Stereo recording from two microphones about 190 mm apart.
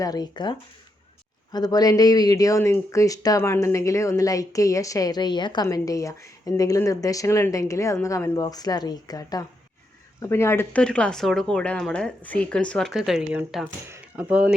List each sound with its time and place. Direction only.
0.0 s speech: 20° left (ahead or behind)
1.5 s speech: 20° left (ahead or behind); by 14.5 s 5° right (ahead or behind)